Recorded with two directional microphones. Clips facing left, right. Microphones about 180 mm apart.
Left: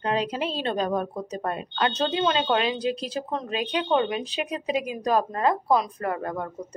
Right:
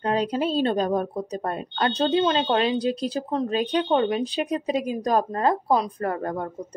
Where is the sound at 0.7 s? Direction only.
35° right (ahead or behind).